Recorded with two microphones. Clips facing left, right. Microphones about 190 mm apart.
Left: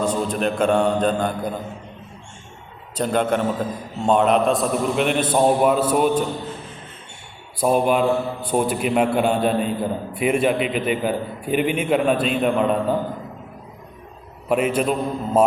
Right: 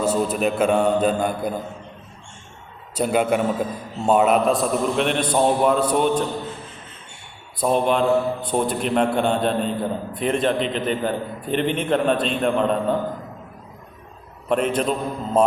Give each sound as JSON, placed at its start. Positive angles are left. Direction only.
{"t": 0.0, "sound": "a man's voice", "side_deg": -5}
{"t": 2.9, "sound": "a man's voice", "side_deg": -10}
{"t": 7.6, "sound": "a man's voice", "side_deg": 10}
{"t": 14.5, "sound": "a man's voice", "side_deg": 5}